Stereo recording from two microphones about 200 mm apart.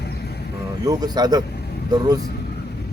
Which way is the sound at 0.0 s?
55° left (ahead or behind).